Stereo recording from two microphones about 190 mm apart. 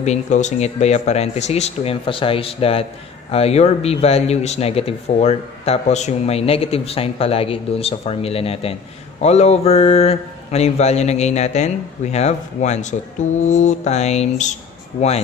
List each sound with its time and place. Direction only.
0.0 s speech: 40° left (ahead or behind)